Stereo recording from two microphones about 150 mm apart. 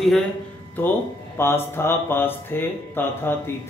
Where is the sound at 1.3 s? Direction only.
15° left (ahead or behind).